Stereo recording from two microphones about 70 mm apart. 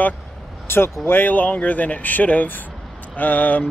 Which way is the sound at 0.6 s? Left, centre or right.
Left.